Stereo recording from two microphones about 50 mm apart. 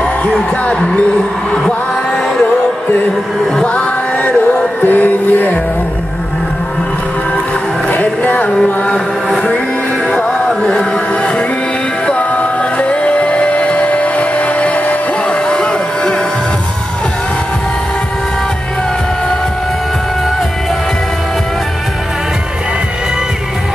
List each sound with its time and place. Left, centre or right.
0.7 s speech: left
1.5 s music: centre
3.6 s music: left
7.9 s speech: left
10.1 s music: centre
12.1 s music: left
15.4 s a sound: centre